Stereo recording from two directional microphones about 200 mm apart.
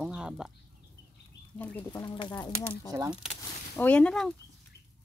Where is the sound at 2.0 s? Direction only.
20° left (ahead or behind).